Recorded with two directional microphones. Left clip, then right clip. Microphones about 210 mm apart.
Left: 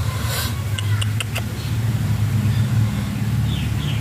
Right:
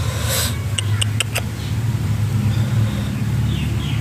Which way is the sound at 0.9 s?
25° right (ahead or behind).